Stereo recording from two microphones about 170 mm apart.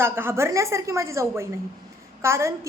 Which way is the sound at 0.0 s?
15° right (ahead or behind).